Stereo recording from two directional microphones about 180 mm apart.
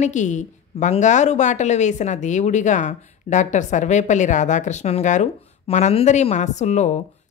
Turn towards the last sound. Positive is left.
turn(degrees=40)  # may be behind; listen again after turning